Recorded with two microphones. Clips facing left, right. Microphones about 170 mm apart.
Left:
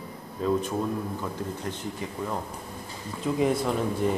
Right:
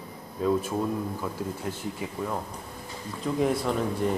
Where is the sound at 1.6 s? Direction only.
5° right (ahead or behind).